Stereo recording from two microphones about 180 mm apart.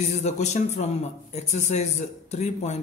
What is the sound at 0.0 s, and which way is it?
A man's voice, 40° left (ahead or behind).